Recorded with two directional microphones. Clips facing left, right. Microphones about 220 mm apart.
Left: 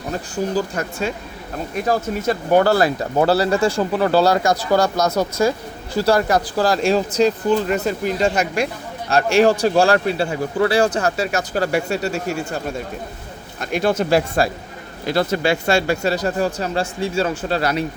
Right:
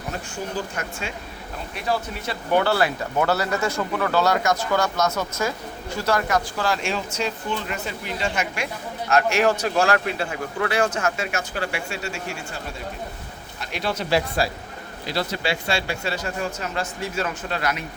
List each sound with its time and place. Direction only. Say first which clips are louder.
0.5 s speech: left 7 dB; 40° left (ahead or behind)
13.6 s speech: left 9 dB; 50° left (ahead or behind); by 17.8 s 35° left (ahead or behind)